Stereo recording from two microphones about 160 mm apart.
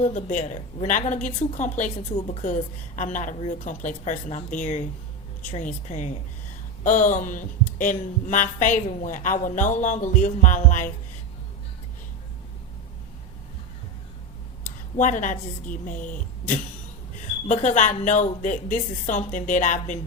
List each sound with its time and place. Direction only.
0.0 s speech: 50° left (ahead or behind)
14.9 s speech: 50° left (ahead or behind)